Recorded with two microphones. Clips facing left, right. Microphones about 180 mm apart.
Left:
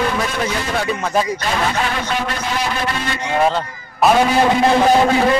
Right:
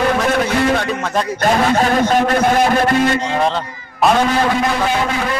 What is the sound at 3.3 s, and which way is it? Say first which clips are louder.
Speech: left 1 dB; 5° left (ahead or behind).